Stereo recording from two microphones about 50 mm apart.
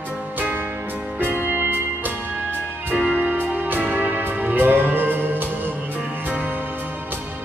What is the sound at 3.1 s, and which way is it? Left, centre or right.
Music, right.